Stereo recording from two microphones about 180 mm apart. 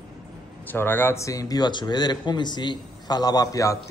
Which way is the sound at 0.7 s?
10° left (ahead or behind).